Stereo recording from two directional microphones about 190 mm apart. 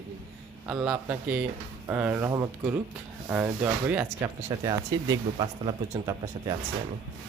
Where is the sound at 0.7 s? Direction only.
10° right (ahead or behind).